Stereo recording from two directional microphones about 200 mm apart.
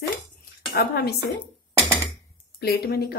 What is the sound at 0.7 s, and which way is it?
Speech, 50° left (ahead or behind).